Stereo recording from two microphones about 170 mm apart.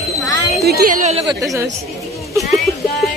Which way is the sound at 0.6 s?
60° right (ahead or behind).